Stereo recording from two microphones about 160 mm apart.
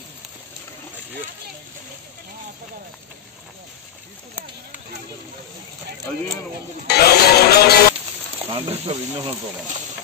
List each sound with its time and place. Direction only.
6.9 s music: 80° left
8.5 s speech: 35° right (ahead or behind)